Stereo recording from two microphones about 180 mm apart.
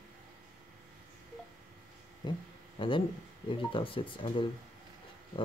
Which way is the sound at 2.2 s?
25° left (ahead or behind).